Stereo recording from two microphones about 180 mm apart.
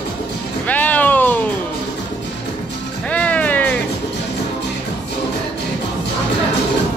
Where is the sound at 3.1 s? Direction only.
5° left (ahead or behind).